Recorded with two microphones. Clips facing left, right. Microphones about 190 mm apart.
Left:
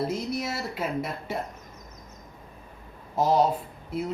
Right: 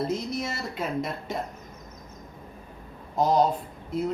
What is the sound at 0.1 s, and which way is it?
Speech, 10° left (ahead or behind).